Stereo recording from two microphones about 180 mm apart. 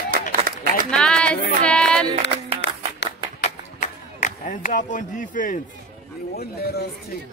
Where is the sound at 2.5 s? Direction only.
75° left (ahead or behind).